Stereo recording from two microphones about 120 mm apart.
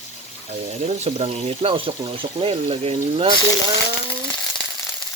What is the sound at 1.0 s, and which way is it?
Speech, 60° right (ahead or behind).